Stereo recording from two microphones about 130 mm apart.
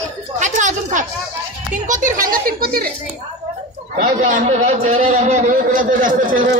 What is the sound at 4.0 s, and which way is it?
A man's voice, 70° right (ahead or behind).